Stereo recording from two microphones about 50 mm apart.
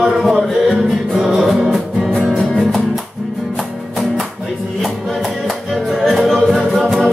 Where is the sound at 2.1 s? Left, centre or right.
Centre.